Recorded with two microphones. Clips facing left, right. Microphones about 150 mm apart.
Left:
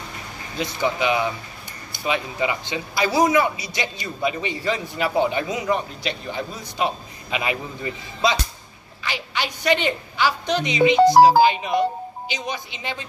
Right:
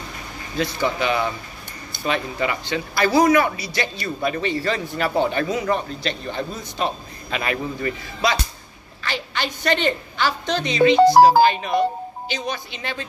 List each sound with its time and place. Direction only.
0.6 s a man's voice: 15° left (ahead or behind)